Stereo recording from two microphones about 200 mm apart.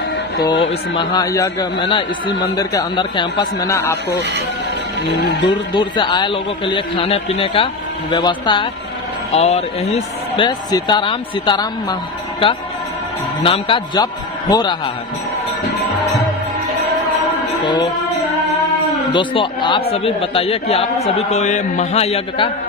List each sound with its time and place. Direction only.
0.4 s a man's voice: 25° left (ahead or behind)
5.0 s speech: 60° left (ahead or behind)
5.8 s a man's voice: 25° left (ahead or behind)
17.6 s music: 20° left (ahead or behind)
19.1 s a man's voice: 25° left (ahead or behind)